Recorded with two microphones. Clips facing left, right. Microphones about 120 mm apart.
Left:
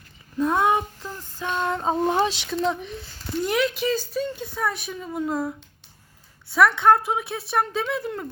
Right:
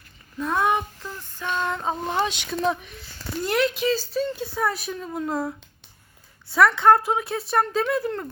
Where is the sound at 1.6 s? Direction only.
30° left (ahead or behind).